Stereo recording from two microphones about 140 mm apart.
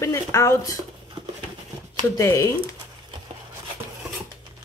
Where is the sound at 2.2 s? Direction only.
20° left (ahead or behind).